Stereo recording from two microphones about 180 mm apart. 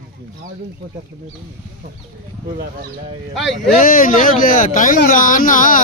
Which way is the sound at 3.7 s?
50° left (ahead or behind).